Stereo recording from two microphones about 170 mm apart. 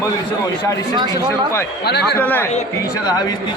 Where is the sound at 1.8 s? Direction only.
75° left (ahead or behind).